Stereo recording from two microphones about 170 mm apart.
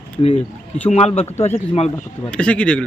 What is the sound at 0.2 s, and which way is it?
A man's voice, 35° left (ahead or behind).